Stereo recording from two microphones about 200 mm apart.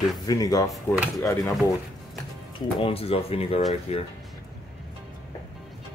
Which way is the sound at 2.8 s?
30° left (ahead or behind).